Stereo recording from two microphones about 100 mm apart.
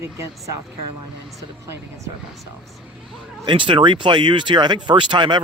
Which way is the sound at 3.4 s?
55° right (ahead or behind).